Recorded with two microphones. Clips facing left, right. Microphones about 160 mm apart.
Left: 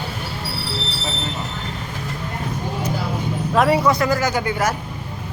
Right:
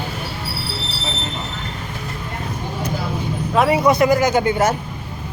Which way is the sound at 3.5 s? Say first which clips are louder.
Even; 5° right (ahead or behind).